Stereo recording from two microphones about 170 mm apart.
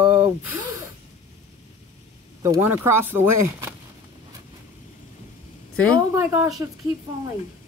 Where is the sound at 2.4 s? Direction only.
15° right (ahead or behind).